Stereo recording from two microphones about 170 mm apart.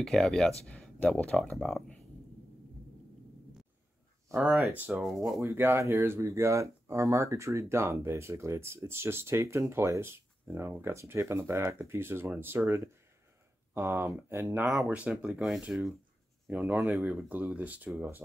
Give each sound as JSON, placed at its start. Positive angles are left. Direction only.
{"t": 0.0, "sound": "speech", "side_deg": 5}
{"t": 4.3, "sound": "speech", "side_deg": -10}
{"t": 5.0, "sound": "speech", "side_deg": 0}
{"t": 5.4, "sound": "speech", "side_deg": -15}